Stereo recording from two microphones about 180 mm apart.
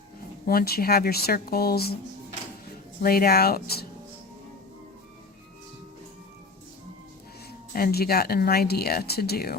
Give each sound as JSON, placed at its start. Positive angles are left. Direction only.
{"t": 0.4, "sound": "speech", "side_deg": 60}
{"t": 3.0, "sound": "speech", "side_deg": 55}
{"t": 7.7, "sound": "speech", "side_deg": 55}